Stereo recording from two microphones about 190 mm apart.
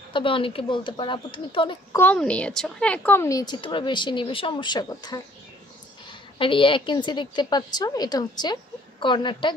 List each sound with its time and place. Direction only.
0.1 s a woman's voice: 25° left (ahead or behind)
2.0 s a woman's voice: 10° left (ahead or behind)
6.3 s a woman's voice: 25° left (ahead or behind)